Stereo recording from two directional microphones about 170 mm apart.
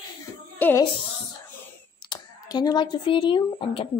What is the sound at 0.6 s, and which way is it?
Speech, 10° left (ahead or behind).